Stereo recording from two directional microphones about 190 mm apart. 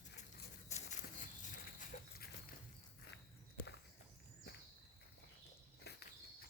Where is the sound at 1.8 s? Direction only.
45° left (ahead or behind).